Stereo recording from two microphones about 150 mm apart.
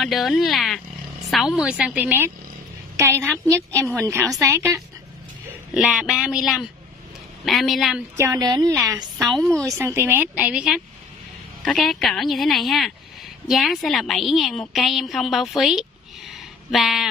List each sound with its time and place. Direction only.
0.0 s a woman's voice: centre (ahead or behind); by 4.6 s 20° right (ahead or behind)
5.8 s a woman's voice: 5° right (ahead or behind)
8.2 s a woman's voice: 25° right (ahead or behind)
9.2 s a woman's voice: centre (ahead or behind)
9.7 s a woman's voice: 15° right (ahead or behind); by 17.1 s centre (ahead or behind)